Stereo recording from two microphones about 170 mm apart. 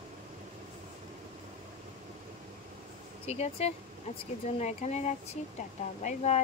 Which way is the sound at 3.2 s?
35° left (ahead or behind).